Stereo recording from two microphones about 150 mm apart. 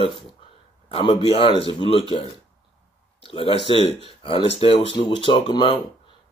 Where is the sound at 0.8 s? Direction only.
40° left (ahead or behind).